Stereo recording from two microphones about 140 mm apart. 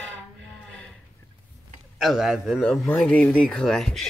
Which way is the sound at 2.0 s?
Centre (ahead or behind).